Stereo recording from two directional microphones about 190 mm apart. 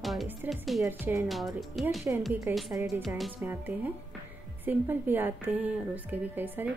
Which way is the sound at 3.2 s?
5° right (ahead or behind).